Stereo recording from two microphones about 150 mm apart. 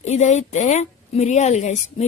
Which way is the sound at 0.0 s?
50° left (ahead or behind).